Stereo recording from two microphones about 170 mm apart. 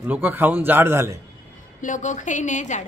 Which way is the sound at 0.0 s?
10° right (ahead or behind).